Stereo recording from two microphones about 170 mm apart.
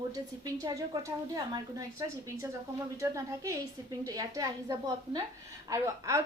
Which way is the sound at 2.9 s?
20° right (ahead or behind).